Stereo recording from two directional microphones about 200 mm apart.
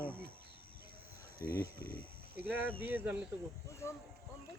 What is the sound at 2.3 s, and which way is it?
Speech, 10° right (ahead or behind).